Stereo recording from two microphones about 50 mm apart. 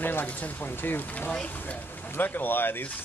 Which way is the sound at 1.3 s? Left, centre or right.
Left.